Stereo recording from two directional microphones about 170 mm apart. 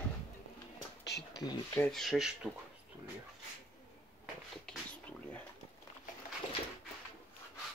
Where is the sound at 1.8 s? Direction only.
Centre (ahead or behind).